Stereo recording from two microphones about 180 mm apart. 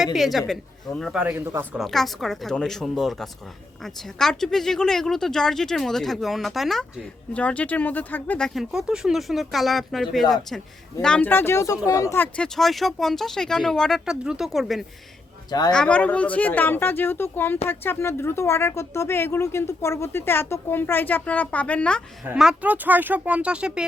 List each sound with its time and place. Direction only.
0.0 s speech: centre (ahead or behind)
1.8 s speech: centre (ahead or behind)
15.4 s speech: 20° left (ahead or behind)
15.7 s speech: 5° left (ahead or behind)
22.4 s speech: 5° right (ahead or behind)